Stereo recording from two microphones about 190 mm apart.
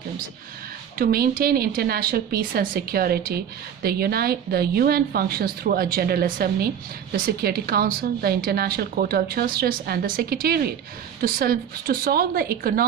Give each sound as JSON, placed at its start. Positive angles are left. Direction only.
{"t": 0.9, "sound": "a woman's voice", "side_deg": -50}